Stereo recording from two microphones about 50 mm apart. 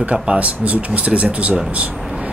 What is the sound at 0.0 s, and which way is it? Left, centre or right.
Speech, right.